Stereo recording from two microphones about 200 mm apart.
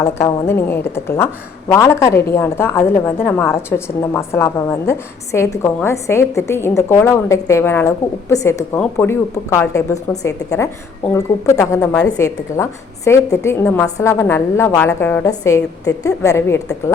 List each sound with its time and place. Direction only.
0.0 s a woman's voice: 15° left (ahead or behind)